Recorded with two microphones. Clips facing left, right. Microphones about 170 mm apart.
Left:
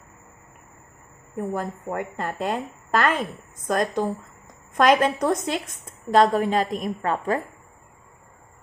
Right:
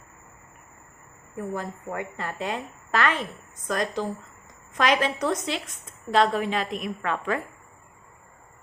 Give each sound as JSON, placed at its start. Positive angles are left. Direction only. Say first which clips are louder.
{"t": 1.4, "sound": "a woman's voice", "louder": "left 4 dB", "side_deg": 50}